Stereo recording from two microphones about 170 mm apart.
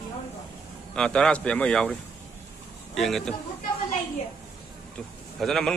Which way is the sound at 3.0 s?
Centre (ahead or behind).